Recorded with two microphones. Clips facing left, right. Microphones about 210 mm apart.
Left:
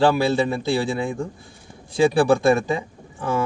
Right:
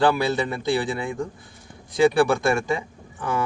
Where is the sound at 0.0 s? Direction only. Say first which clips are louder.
Left 3 dB; 30° left (ahead or behind).